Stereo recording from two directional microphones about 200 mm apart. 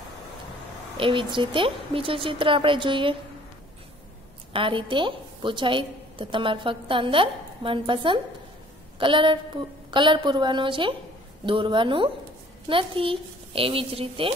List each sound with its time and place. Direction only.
0.9 s a woman's voice: 25° right (ahead or behind)
4.5 s a woman's voice: 25° right (ahead or behind)